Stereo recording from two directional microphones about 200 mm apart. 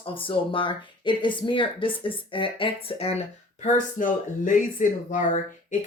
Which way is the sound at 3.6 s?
40° left (ahead or behind).